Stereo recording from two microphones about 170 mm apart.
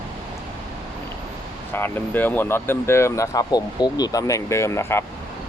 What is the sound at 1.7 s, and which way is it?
Speech, 10° left (ahead or behind).